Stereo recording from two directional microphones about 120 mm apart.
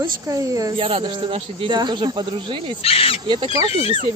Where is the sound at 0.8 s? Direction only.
50° right (ahead or behind).